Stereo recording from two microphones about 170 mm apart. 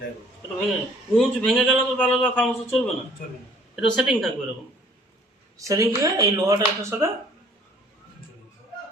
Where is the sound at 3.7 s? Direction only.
5° right (ahead or behind).